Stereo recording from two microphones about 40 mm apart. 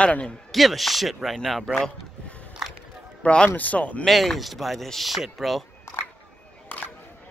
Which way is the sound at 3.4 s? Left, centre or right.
Left.